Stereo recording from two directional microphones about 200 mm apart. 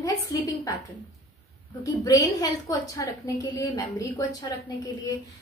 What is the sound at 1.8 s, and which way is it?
A woman's voice, 15° left (ahead or behind).